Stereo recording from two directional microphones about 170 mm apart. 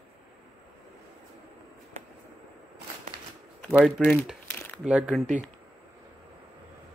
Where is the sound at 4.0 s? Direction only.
Centre (ahead or behind).